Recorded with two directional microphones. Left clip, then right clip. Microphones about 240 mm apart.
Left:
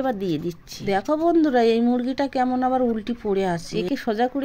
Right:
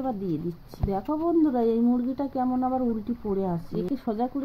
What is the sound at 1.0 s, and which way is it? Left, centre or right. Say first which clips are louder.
A woman's voice: left 4 dB; left.